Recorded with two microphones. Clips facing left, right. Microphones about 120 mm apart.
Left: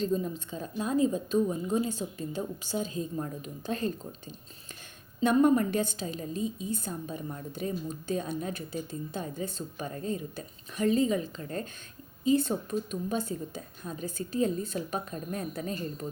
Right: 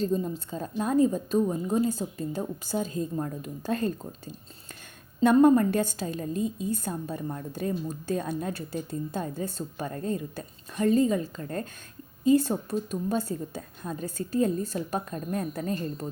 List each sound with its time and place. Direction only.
0.0 s a woman's voice: 30° right (ahead or behind)
0.5 s a woman's voice: 45° right (ahead or behind)
5.2 s a woman's voice: 45° right (ahead or behind)